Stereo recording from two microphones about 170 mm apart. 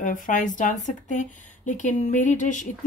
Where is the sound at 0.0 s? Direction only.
50° left (ahead or behind).